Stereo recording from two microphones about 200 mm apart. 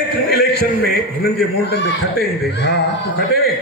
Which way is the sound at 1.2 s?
55° left (ahead or behind).